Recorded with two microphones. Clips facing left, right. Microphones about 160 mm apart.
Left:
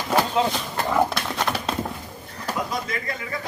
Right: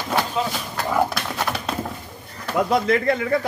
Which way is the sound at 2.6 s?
60° right (ahead or behind).